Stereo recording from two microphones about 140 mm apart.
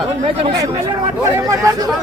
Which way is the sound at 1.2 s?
25° right (ahead or behind).